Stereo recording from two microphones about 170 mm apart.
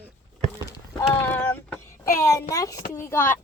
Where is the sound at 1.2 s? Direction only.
10° left (ahead or behind).